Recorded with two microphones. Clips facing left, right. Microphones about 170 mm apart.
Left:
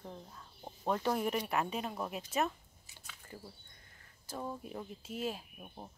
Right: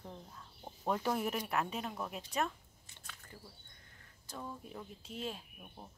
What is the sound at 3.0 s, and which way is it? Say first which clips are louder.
Chewing: even; 5° left (ahead or behind).